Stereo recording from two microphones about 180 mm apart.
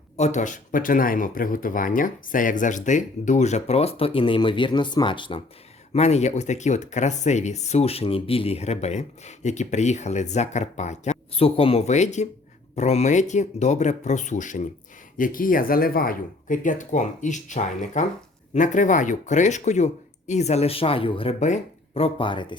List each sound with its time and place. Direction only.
0.2 s speech: 40° left (ahead or behind)
5.9 s speech: 40° left (ahead or behind)